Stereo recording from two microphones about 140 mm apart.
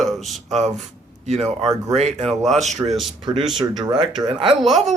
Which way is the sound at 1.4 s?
Centre (ahead or behind).